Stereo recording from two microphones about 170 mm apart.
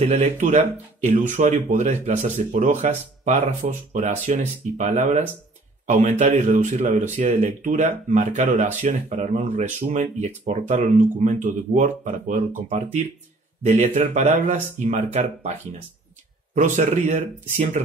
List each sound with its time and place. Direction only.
0.0 s speech: 40° right (ahead or behind)
16.5 s speech: 45° right (ahead or behind)